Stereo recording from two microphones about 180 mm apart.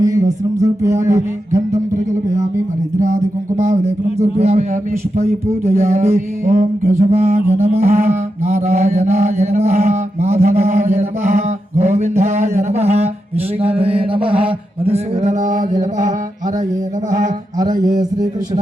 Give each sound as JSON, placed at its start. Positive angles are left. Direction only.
{"t": 0.0, "sound": "music", "side_deg": -20}
{"t": 3.6, "sound": "a sound", "side_deg": -40}
{"t": 17.1, "sound": "mantra", "side_deg": -45}
{"t": 17.7, "sound": "a man's voice", "side_deg": -20}